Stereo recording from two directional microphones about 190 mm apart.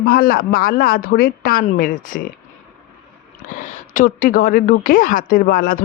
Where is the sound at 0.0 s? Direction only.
50° left (ahead or behind).